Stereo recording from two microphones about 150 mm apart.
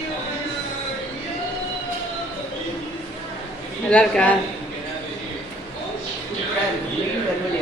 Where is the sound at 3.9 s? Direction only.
5° left (ahead or behind).